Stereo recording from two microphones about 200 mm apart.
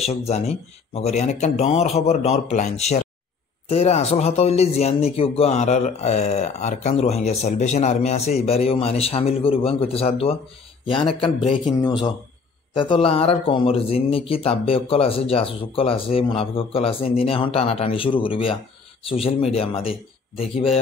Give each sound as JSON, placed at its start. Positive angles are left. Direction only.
{"t": 0.3, "sound": "speech", "side_deg": 30}